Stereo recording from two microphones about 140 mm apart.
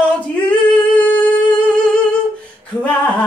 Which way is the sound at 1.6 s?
10° left (ahead or behind).